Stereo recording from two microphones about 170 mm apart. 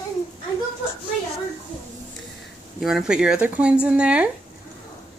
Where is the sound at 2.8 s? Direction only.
5° right (ahead or behind).